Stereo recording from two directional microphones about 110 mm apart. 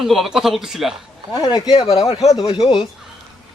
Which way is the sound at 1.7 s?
65° left (ahead or behind).